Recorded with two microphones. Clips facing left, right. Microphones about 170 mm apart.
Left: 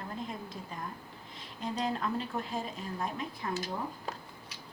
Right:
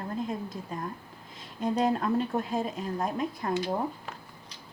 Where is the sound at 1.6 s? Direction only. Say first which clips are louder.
Right 7 dB; 50° right (ahead or behind).